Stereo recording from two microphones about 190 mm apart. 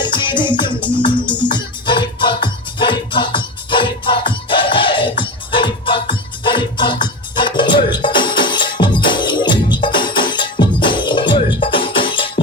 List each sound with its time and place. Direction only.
0.0 s music: 25° left (ahead or behind)